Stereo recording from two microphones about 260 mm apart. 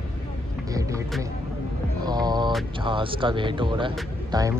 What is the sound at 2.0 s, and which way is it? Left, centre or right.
Speech, centre.